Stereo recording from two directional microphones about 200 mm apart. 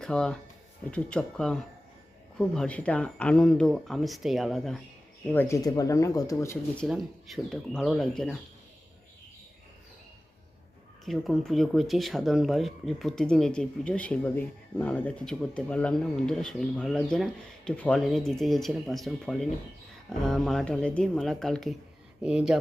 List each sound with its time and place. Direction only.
0.0 s speech: 5° left (ahead or behind)
5.3 s speech: 10° left (ahead or behind)
6.8 s speech: centre (ahead or behind)
11.0 s speech: centre (ahead or behind)